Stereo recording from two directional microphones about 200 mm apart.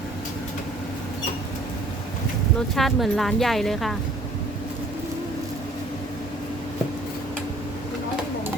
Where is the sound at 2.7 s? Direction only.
Centre (ahead or behind).